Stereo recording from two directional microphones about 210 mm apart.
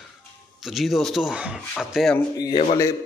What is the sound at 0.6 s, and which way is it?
Speech, centre (ahead or behind).